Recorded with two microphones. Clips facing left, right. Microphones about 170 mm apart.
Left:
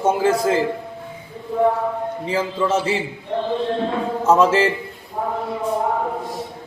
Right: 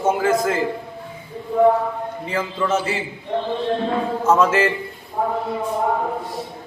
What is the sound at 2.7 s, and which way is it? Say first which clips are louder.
Speech: left 1 dB; 30° left (ahead or behind).